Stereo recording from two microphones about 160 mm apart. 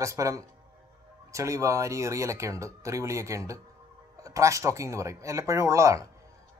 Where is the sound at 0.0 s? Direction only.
20° right (ahead or behind).